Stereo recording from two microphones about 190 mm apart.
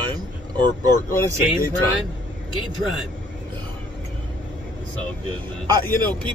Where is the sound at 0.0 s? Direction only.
25° right (ahead or behind).